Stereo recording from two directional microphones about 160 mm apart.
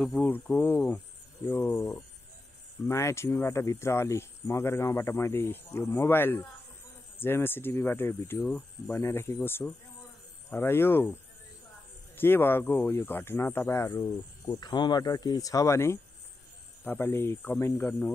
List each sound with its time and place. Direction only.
0.0 s speech: 10° left (ahead or behind)
12.2 s speech: 15° left (ahead or behind)